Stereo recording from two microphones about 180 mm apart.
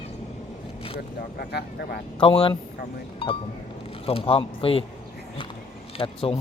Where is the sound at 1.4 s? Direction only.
65° left (ahead or behind).